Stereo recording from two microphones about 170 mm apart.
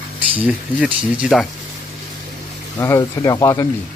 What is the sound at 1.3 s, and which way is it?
Speech, centre (ahead or behind).